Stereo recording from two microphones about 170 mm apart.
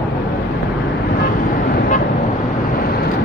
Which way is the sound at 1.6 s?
65° left (ahead or behind).